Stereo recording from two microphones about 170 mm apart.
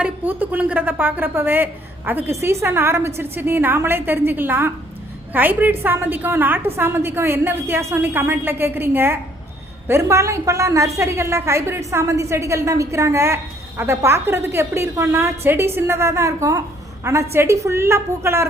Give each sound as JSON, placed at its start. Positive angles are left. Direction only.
{"t": 0.0, "sound": "a woman's voice", "side_deg": -10}